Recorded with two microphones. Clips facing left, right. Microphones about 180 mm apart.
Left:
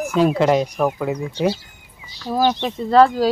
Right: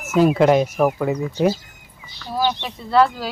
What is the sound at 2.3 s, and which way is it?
Speech, 45° left (ahead or behind).